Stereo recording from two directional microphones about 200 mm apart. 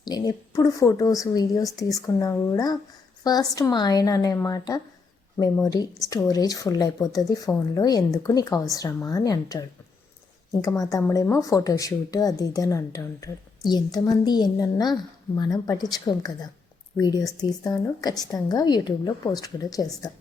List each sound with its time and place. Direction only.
0.0 s a woman's voice: 20° left (ahead or behind)